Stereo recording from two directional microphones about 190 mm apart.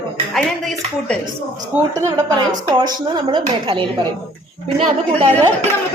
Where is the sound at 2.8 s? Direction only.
20° right (ahead or behind).